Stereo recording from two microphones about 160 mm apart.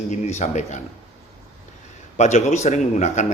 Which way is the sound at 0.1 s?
45° left (ahead or behind).